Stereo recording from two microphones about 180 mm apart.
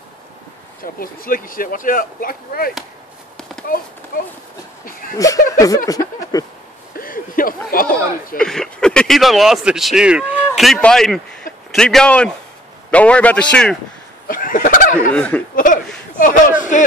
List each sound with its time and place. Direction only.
0.9 s speech: 50° left (ahead or behind)
5.1 s speech: 20° left (ahead or behind)
7.0 s a sound: 50° left (ahead or behind)
8.4 s a man's voice: 5° left (ahead or behind)
14.2 s fowl: 50° left (ahead or behind)
15.1 s a man's voice: 5° left (ahead or behind)
15.5 s a sound: 45° left (ahead or behind)
16.2 s speech: 45° left (ahead or behind)